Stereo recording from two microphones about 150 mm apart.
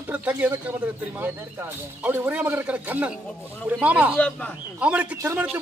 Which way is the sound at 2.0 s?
10° right (ahead or behind).